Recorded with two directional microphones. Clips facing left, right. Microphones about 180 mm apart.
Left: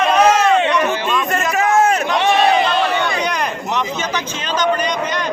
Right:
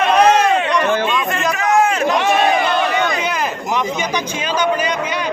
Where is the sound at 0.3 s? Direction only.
35° right (ahead or behind).